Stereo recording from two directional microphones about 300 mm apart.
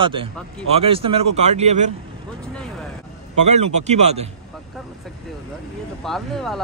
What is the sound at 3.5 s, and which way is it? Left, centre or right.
Speech, right.